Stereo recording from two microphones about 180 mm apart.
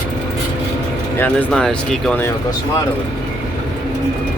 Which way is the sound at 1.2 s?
5° left (ahead or behind).